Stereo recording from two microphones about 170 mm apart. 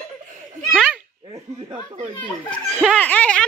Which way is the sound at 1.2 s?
30° right (ahead or behind).